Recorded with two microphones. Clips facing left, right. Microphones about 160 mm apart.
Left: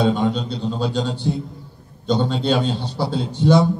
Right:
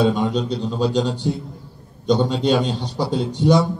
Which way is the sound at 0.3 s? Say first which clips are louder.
Right 1 dB; 15° right (ahead or behind).